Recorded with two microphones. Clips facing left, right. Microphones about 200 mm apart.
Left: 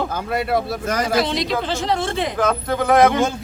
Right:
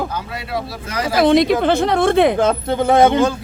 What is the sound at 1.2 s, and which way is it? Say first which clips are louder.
Speech: right 8 dB; 55° right (ahead or behind).